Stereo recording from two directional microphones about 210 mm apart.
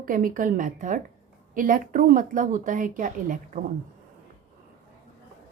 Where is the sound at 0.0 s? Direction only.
40° right (ahead or behind).